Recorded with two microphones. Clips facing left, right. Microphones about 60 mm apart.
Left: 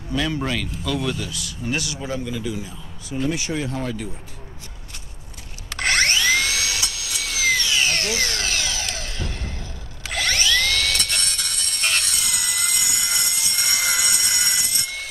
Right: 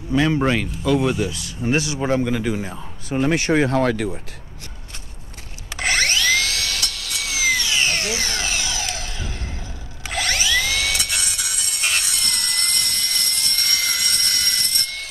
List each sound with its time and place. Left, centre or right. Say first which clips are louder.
0.1 s speech: right 6 dB; right
2.0 s speech: right 7 dB; right
5.7 s wood: even; centre
10.0 s music: even; centre